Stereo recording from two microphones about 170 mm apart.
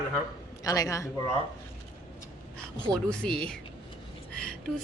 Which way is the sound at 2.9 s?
5° left (ahead or behind).